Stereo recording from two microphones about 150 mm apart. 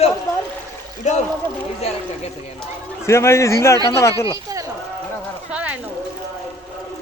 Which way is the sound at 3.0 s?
20° left (ahead or behind).